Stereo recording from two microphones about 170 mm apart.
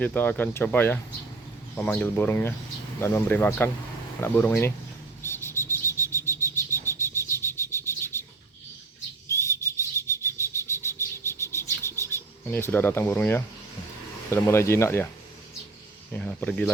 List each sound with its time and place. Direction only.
0.0 s speech: 10° left (ahead or behind)
5.2 s bird: 15° left (ahead or behind)
9.3 s bird: 15° left (ahead or behind)
14.3 s speech: 15° left (ahead or behind)
16.1 s speech: 5° left (ahead or behind)